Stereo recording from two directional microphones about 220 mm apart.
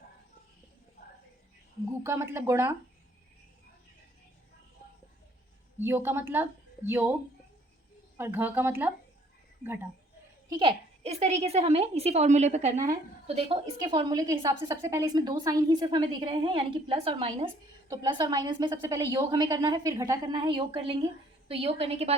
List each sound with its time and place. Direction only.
2.0 s speech: 10° right (ahead or behind)
5.8 s speech: 10° right (ahead or behind)
8.2 s speech: 10° right (ahead or behind)
10.6 s a woman's voice: 25° right (ahead or behind)